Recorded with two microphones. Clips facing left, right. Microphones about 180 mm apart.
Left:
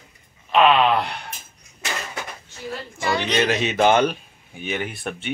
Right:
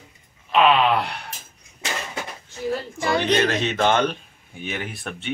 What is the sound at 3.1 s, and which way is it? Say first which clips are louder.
Speech: right 3 dB; 55° right (ahead or behind).